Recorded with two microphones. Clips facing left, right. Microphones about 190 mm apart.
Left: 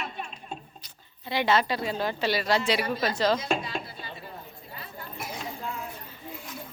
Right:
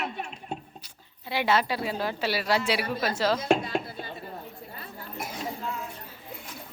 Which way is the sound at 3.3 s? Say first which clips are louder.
Right 5 dB; 55° right (ahead or behind).